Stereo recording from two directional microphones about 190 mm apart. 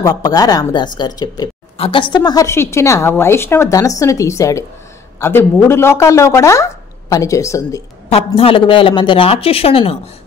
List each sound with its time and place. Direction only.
0.0 s speech: 20° left (ahead or behind)
8.4 s speech: 30° left (ahead or behind)